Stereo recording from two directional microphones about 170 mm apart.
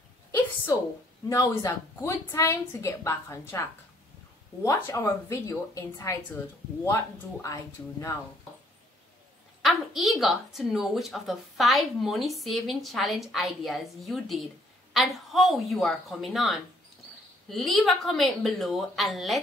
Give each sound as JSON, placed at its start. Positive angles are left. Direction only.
{"t": 1.3, "sound": "a woman's voice", "side_deg": 20}
{"t": 9.6, "sound": "a woman's voice", "side_deg": 0}